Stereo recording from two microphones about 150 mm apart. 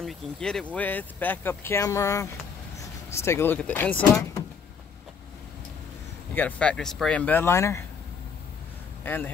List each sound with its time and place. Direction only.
0.0 s speech: centre (ahead or behind)
6.3 s speech: 10° left (ahead or behind)
9.0 s a man's voice: 10° left (ahead or behind)